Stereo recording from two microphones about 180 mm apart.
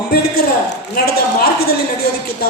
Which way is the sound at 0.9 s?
60° left (ahead or behind).